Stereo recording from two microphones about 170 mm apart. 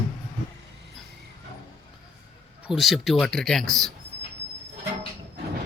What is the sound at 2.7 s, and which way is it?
Speech, centre (ahead or behind).